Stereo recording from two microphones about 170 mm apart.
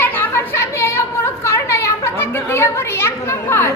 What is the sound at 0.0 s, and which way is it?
Chatter, 10° left (ahead or behind).